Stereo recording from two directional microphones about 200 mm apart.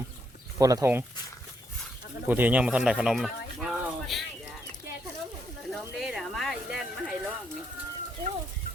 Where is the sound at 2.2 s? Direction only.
10° right (ahead or behind).